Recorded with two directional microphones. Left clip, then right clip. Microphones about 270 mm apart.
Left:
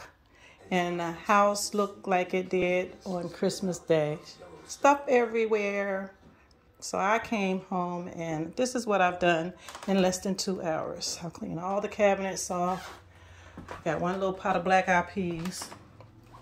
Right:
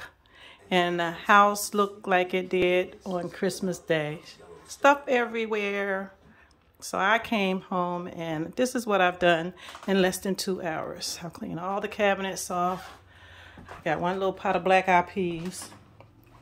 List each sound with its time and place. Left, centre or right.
0.7 s speech: centre
9.0 s speech: right
9.6 s speech: centre
10.7 s speech: centre
11.3 s speech: centre
13.8 s speech: centre